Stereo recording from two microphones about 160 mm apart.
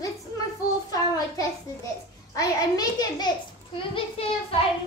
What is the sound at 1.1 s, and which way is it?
A child's voice, 20° left (ahead or behind).